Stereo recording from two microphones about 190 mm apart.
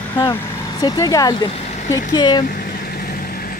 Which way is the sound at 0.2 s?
20° left (ahead or behind).